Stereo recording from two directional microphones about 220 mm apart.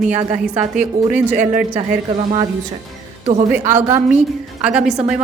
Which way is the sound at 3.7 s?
10° right (ahead or behind).